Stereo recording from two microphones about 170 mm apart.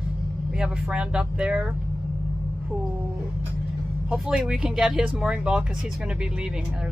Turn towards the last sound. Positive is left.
turn(degrees=-5)  # may be behind; listen again after turning